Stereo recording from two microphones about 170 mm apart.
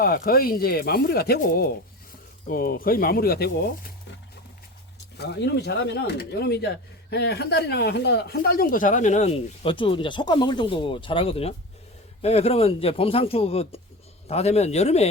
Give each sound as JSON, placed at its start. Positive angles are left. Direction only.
{"t": 0.0, "sound": "speech", "side_deg": 60}
{"t": 5.1, "sound": "speech", "side_deg": 80}